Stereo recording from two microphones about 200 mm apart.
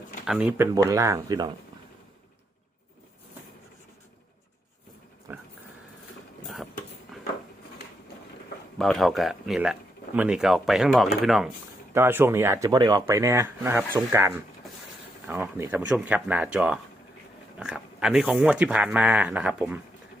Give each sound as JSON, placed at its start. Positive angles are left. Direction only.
{"t": 0.3, "sound": "speech", "side_deg": -5}
{"t": 5.3, "sound": "dog", "side_deg": -10}
{"t": 8.8, "sound": "speech", "side_deg": 0}
{"t": 11.9, "sound": "speech", "side_deg": -10}